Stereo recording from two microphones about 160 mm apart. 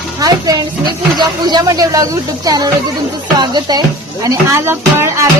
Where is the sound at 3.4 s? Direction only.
25° right (ahead or behind).